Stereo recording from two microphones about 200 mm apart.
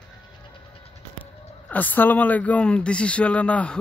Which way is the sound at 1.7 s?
10° left (ahead or behind).